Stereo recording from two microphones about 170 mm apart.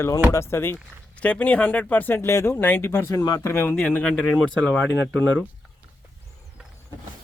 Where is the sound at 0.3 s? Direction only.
15° left (ahead or behind).